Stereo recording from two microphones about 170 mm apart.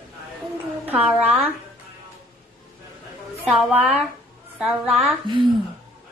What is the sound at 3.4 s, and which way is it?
A woman's voice, centre (ahead or behind).